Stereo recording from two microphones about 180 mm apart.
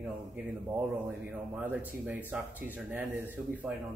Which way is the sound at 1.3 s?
10° right (ahead or behind).